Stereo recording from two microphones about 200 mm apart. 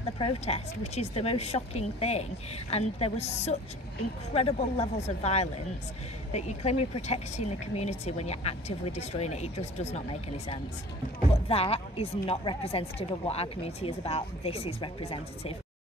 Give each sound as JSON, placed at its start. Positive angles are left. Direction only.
{"t": 0.2, "sound": "speech", "side_deg": 30}